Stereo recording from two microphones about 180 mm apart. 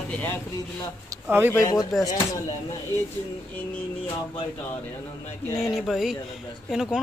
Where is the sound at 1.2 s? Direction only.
10° right (ahead or behind).